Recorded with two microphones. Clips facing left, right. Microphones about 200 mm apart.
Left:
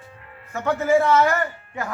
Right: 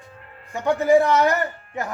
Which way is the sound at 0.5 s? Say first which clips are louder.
Right 2 dB; 15° right (ahead or behind).